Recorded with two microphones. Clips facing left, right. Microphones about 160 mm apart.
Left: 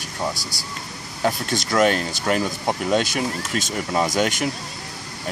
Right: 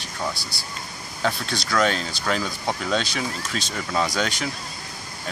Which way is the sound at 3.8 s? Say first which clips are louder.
Left 2 dB; 15° left (ahead or behind).